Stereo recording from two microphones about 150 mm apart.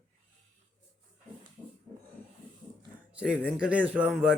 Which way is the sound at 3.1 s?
5° right (ahead or behind).